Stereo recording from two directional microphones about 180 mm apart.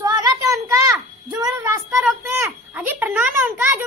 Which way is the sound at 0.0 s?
20° right (ahead or behind).